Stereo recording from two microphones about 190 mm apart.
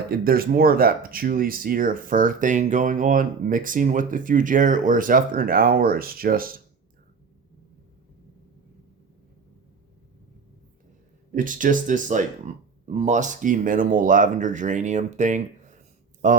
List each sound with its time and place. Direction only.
0.1 s speech: 50° right (ahead or behind)
11.3 s speech: 45° right (ahead or behind)